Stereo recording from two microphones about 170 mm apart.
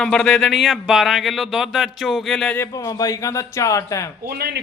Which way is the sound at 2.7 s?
20° left (ahead or behind).